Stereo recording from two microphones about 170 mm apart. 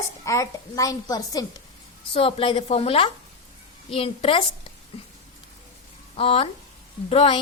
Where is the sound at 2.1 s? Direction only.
35° left (ahead or behind).